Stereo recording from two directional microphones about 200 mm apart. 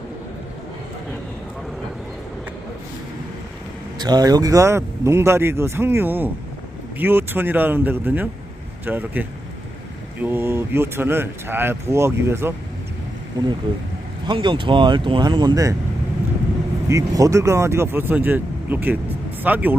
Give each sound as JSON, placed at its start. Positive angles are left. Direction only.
{"t": 3.9, "sound": "speech", "side_deg": -20}
{"t": 14.3, "sound": "speech", "side_deg": -25}
{"t": 16.9, "sound": "speech", "side_deg": -15}